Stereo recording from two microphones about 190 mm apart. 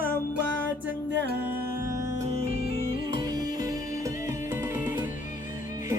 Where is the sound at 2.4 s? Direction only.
30° right (ahead or behind).